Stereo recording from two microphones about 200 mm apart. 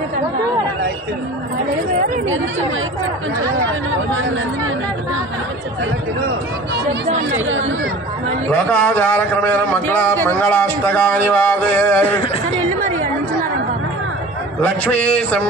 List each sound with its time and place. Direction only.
7.3 s speech: 75° right (ahead or behind)
8.5 s speech: 10° left (ahead or behind)
14.6 s speech: 10° left (ahead or behind)